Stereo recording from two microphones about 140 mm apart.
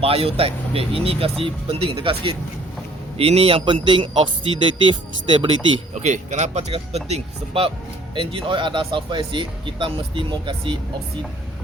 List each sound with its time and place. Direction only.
0.0 s speech: 45° right (ahead or behind)
5.9 s speech: 55° right (ahead or behind); by 10.8 s 35° right (ahead or behind)